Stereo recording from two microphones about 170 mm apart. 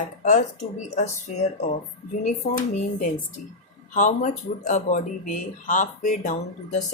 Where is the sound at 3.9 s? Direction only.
45° left (ahead or behind).